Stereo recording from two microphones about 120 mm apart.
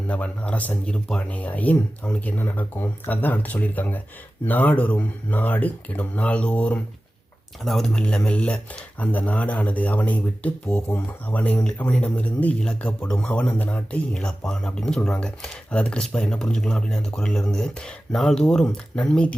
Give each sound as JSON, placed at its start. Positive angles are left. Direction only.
{"t": 0.1, "sound": "speech", "side_deg": 10}